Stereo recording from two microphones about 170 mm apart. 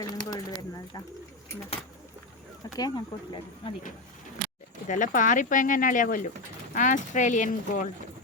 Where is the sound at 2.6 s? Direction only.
25° left (ahead or behind).